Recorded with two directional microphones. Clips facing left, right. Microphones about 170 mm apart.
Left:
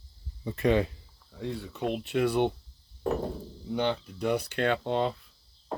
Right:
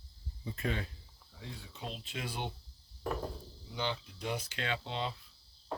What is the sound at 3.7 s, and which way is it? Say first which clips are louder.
Speech: left 9 dB; 55° left (ahead or behind).